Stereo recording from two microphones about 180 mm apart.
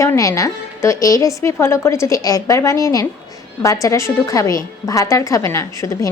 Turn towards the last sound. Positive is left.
turn(degrees=15)  # may be behind; listen again after turning